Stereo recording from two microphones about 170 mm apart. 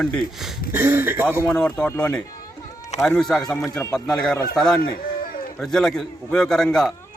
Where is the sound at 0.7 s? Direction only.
10° right (ahead or behind).